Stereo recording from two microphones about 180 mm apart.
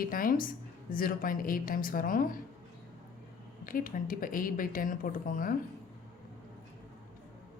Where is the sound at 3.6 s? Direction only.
50° left (ahead or behind).